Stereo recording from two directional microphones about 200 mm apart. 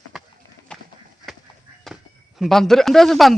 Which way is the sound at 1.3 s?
Centre (ahead or behind).